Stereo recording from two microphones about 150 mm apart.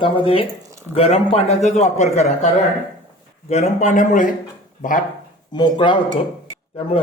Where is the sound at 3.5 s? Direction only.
55° left (ahead or behind).